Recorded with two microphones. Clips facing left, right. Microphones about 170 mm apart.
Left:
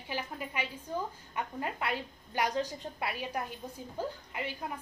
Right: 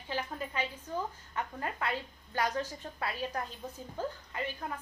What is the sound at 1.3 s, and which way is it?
A woman's voice, 15° left (ahead or behind).